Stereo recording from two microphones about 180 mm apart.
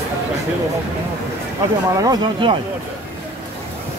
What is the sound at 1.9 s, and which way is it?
Speech, 20° right (ahead or behind).